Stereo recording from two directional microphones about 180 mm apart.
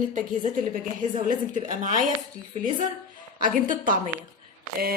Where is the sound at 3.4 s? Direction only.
50° right (ahead or behind).